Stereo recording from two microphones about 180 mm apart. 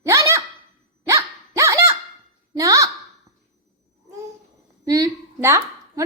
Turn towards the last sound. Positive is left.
turn(degrees=-15)  # may be behind; listen again after turning